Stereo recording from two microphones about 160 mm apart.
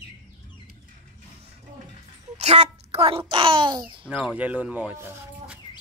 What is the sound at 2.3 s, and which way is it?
A child's voice, 45° right (ahead or behind).